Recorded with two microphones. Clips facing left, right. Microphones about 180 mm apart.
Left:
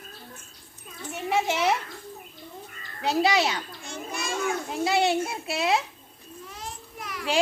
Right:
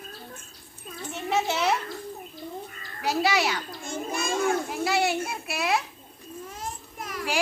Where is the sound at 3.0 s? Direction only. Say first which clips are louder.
Left 2 dB; 20° left (ahead or behind).